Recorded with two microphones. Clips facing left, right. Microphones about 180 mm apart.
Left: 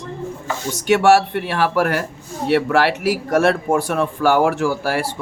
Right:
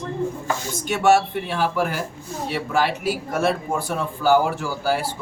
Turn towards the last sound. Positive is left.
turn(degrees=75)  # may be behind; listen again after turning